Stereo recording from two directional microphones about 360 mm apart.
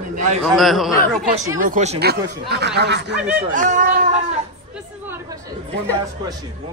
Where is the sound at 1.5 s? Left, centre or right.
Right.